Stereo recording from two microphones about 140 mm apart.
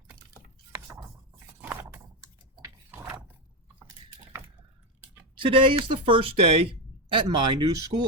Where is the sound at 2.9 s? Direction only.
15° right (ahead or behind).